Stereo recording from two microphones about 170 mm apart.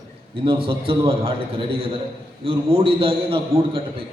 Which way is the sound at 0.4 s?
35° right (ahead or behind).